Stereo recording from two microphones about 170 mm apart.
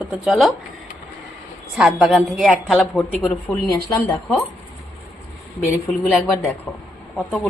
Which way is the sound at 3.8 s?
20° left (ahead or behind).